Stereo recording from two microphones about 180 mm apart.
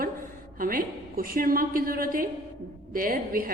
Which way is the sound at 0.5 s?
50° right (ahead or behind).